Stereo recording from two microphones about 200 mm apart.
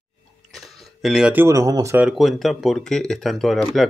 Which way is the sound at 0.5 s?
Centre (ahead or behind).